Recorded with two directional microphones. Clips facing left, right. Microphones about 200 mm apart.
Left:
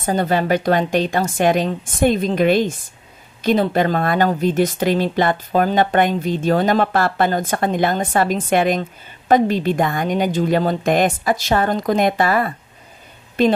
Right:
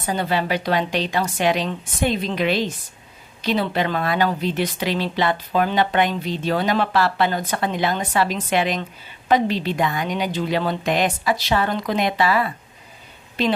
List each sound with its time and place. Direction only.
0.0 s speech: 45° left (ahead or behind)